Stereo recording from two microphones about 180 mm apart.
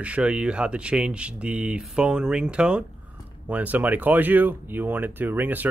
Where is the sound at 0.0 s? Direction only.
5° right (ahead or behind).